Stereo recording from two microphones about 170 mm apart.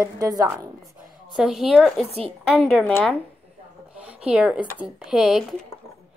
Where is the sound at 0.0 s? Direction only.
20° right (ahead or behind).